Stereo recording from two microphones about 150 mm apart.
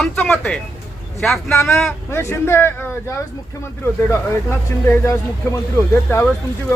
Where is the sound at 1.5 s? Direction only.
15° left (ahead or behind).